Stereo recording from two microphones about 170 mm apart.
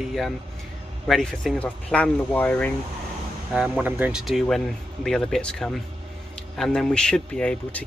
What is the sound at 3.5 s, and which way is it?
Speech, 10° right (ahead or behind).